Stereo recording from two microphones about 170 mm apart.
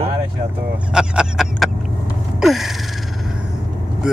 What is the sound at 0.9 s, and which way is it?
Speech, 5° right (ahead or behind).